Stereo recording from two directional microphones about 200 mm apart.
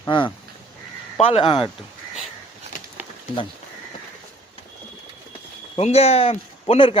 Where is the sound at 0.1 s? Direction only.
25° left (ahead or behind).